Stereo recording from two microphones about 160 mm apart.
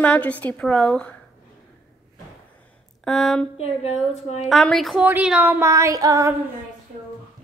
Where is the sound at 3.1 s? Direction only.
5° left (ahead or behind).